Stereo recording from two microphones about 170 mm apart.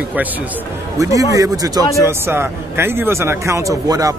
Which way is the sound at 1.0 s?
20° right (ahead or behind).